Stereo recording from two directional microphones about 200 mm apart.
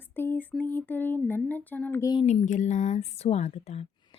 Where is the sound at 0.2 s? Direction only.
10° left (ahead or behind).